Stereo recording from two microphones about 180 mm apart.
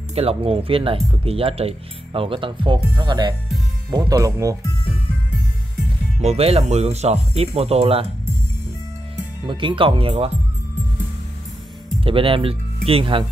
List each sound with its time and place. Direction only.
0.1 s speech: 35° right (ahead or behind); by 4.6 s 20° right (ahead or behind)
6.2 s speech: 35° right (ahead or behind)
9.5 s speech: 25° right (ahead or behind)
12.0 s speech: 30° right (ahead or behind)